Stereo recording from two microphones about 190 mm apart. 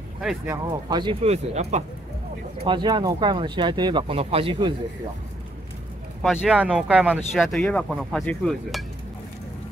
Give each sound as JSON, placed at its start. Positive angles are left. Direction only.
{"t": 0.5, "sound": "speech", "side_deg": -20}
{"t": 2.6, "sound": "speech", "side_deg": -25}
{"t": 6.4, "sound": "speech", "side_deg": -5}